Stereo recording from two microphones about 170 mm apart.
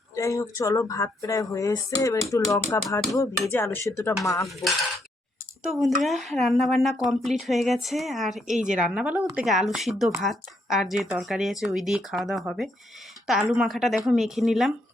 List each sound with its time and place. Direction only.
0.2 s speech: 20° left (ahead or behind)
4.4 s speech: centre (ahead or behind)